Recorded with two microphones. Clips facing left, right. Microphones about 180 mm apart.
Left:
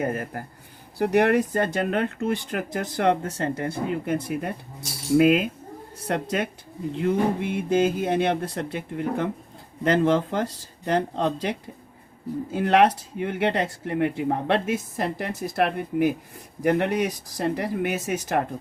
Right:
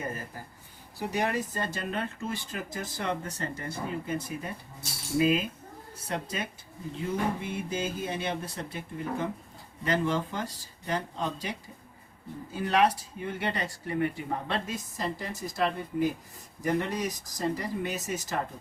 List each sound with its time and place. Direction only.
0.0 s speech: 60° left (ahead or behind)
12.5 s speech: 70° left (ahead or behind)